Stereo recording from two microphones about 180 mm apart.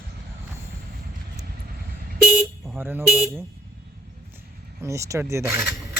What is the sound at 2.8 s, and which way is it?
Speech, 10° right (ahead or behind).